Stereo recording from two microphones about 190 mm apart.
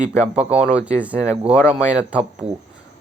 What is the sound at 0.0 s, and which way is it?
Speech, 5° right (ahead or behind).